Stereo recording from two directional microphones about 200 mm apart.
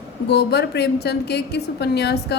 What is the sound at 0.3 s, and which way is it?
A woman's voice, 55° left (ahead or behind).